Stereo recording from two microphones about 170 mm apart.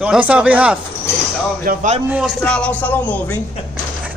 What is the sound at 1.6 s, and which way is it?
Speech, 45° right (ahead or behind).